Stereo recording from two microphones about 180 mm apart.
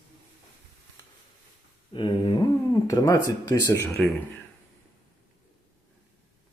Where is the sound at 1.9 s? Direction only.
25° left (ahead or behind).